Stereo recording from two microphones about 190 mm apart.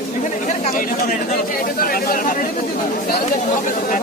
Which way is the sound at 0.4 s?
45° left (ahead or behind).